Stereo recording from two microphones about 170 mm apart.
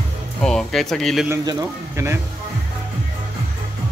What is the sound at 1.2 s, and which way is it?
Speech, 15° right (ahead or behind).